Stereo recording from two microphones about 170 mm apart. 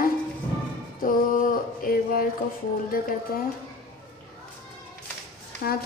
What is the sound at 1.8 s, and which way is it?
Speech, 60° left (ahead or behind).